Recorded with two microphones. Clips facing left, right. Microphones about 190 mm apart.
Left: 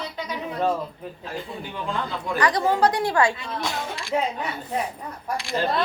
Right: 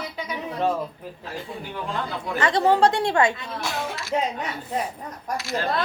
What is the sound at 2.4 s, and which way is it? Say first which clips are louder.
Child singing: right 2 dB; 25° right (ahead or behind).